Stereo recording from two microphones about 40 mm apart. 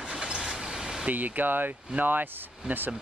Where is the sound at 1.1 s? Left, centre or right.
Right.